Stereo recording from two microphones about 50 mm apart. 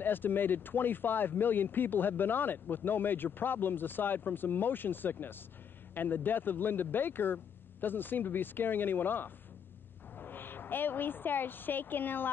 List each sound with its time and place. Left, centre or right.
0.0 s speech: left